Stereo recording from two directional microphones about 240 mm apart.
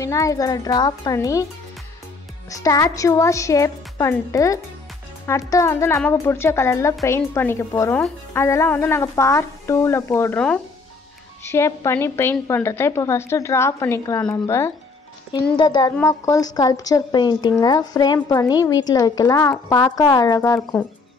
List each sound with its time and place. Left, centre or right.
0.0 s a woman's voice: centre
2.5 s a woman's voice: centre